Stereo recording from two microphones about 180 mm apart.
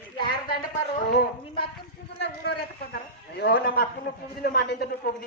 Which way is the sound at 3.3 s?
60° left (ahead or behind).